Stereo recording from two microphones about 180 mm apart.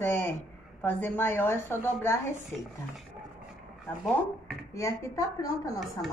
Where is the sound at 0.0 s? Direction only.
15° left (ahead or behind).